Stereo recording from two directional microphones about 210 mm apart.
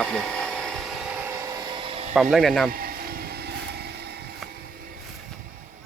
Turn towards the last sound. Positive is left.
turn(degrees=-50)  # may be behind; listen again after turning